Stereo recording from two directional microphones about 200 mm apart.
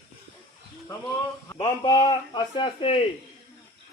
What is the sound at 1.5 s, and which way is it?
A man's voice, 25° left (ahead or behind).